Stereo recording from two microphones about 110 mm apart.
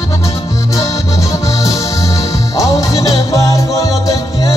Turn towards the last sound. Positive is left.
turn(degrees=30)  # may be behind; listen again after turning